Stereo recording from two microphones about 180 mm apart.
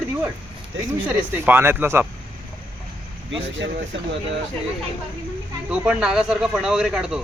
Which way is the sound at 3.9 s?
85° right.